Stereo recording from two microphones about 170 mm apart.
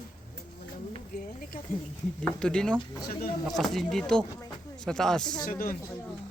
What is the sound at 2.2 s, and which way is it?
Speech, 5° left (ahead or behind).